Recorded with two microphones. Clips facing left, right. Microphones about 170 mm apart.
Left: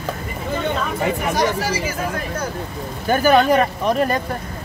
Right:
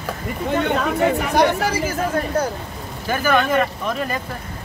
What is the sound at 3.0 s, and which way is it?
Speech, 35° left (ahead or behind).